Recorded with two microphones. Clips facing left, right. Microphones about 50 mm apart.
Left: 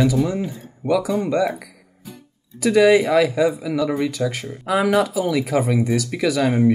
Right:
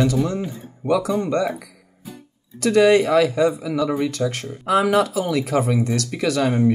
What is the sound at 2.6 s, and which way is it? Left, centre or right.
A man's voice, centre.